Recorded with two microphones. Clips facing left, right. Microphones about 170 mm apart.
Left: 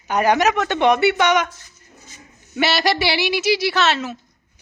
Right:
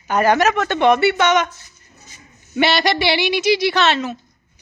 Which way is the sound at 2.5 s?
5° left (ahead or behind).